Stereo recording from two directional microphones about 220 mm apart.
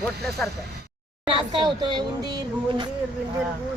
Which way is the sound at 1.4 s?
20° right (ahead or behind).